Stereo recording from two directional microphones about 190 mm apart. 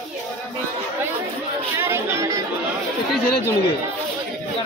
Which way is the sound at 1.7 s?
15° right (ahead or behind).